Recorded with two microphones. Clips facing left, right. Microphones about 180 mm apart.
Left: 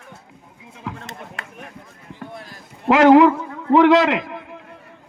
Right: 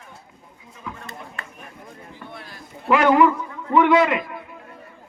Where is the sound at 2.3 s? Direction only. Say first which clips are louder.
Left 2 dB; 40° left (ahead or behind).